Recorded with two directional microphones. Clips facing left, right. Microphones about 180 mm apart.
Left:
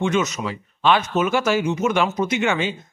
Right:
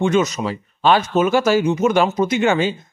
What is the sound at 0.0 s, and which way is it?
Speech, 35° right (ahead or behind).